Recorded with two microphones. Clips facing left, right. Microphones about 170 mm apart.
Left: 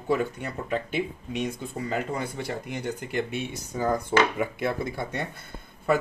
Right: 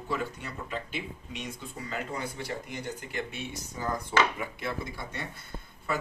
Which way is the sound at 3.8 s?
50° left (ahead or behind).